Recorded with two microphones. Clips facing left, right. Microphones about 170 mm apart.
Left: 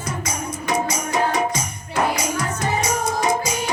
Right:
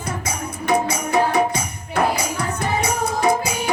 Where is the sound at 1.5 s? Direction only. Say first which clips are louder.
Right 2 dB; 60° right (ahead or behind).